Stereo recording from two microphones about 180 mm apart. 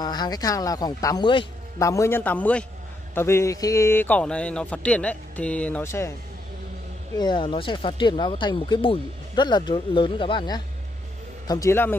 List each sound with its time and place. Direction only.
0.0 s a man's voice: 25° left (ahead or behind)
7.2 s a man's voice: 25° left (ahead or behind)